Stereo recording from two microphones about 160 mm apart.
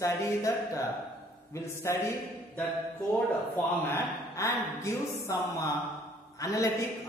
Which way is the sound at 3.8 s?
15° left (ahead or behind).